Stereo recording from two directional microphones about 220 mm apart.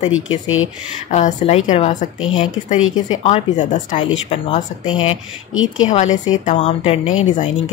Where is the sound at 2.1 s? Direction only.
65° left (ahead or behind).